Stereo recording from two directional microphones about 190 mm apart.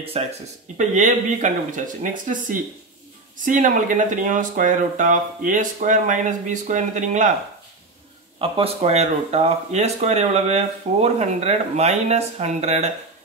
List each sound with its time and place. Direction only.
0.2 s speech: 30° right (ahead or behind)
8.4 s speech: 30° right (ahead or behind)